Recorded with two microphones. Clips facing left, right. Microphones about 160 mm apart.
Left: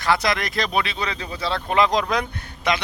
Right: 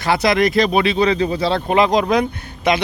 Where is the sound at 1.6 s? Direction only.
20° right (ahead or behind).